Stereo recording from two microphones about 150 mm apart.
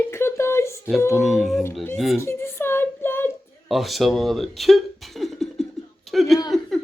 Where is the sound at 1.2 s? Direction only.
Centre (ahead or behind).